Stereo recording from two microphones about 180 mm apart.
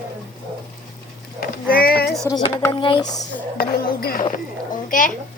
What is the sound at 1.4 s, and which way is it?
Speech, 55° left (ahead or behind).